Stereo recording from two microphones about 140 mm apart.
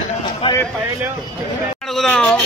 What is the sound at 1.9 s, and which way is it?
Speech, 5° left (ahead or behind).